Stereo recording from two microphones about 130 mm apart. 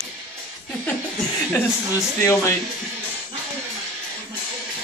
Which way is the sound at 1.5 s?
20° left (ahead or behind).